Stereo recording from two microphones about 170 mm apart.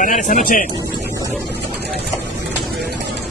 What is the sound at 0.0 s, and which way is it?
Speech, 50° left (ahead or behind).